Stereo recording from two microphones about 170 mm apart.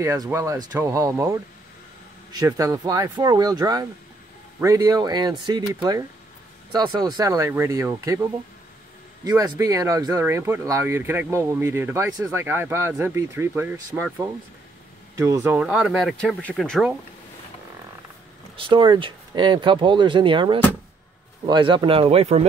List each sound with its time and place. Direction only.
0.0 s speech: 15° right (ahead or behind)
2.3 s speech: 20° right (ahead or behind)
15.6 s speech: 5° right (ahead or behind)
18.6 s speech: 30° right (ahead or behind)